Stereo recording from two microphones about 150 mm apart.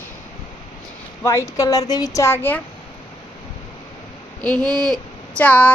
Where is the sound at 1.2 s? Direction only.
20° left (ahead or behind).